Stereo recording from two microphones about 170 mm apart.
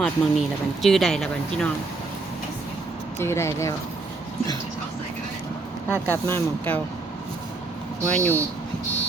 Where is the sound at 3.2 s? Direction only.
15° left (ahead or behind).